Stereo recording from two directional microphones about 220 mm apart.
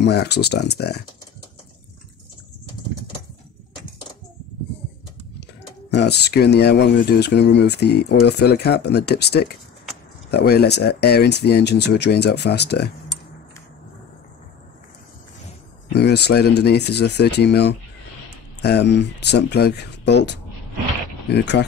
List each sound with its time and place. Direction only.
0.0 s speech: 50° left (ahead or behind)
5.9 s speech: 50° left (ahead or behind)
16.0 s speech: 50° left (ahead or behind)